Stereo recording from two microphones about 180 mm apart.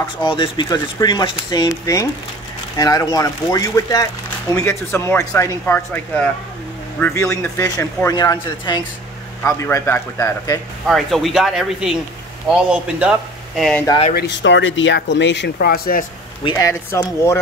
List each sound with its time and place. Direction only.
0.0 s speech: 30° left (ahead or behind); by 6.0 s 10° left (ahead or behind)
7.2 s speech: 15° left (ahead or behind)
10.9 s speech: centre (ahead or behind)
14.1 s speech: 80° left; by 16.1 s 55° left (ahead or behind)
16.5 s speech: 15° left (ahead or behind)